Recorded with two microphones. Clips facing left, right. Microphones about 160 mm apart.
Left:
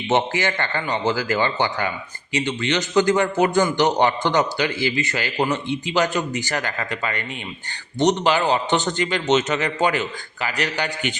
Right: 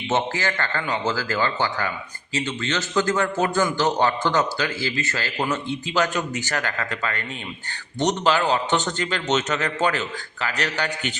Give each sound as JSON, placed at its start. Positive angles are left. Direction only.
{"t": 0.1, "sound": "a man's voice", "side_deg": 20}